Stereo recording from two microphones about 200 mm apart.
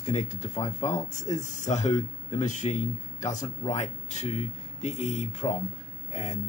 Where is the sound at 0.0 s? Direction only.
35° left (ahead or behind).